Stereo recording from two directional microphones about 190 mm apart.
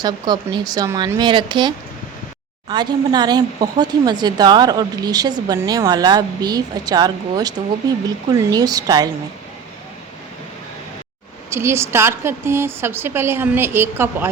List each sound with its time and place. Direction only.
0.0 s speech: 20° right (ahead or behind)
11.5 s a woman's voice: 15° right (ahead or behind)